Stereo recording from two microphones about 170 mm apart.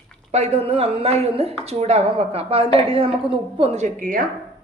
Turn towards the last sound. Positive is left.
turn(degrees=-50)  # may be behind; listen again after turning